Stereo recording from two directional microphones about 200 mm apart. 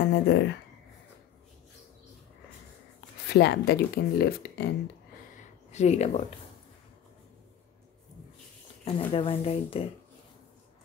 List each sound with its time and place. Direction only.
0.0 s speech: 60° left (ahead or behind)
3.3 s speech: 55° left (ahead or behind)
5.7 s speech: 35° left (ahead or behind)
8.8 s speech: 30° left (ahead or behind)